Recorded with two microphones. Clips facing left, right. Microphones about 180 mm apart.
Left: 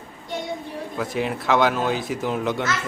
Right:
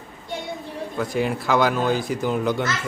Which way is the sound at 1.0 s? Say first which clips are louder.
Right 2 dB; centre (ahead or behind).